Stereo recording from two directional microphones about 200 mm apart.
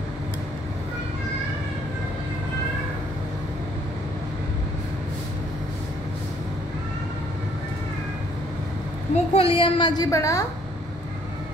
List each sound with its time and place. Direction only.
9.1 s a woman's voice: 30° left (ahead or behind)